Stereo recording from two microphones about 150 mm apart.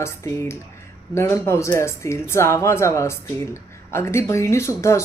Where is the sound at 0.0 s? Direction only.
15° left (ahead or behind).